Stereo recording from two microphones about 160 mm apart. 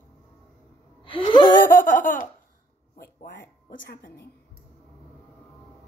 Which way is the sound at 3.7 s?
75° left (ahead or behind).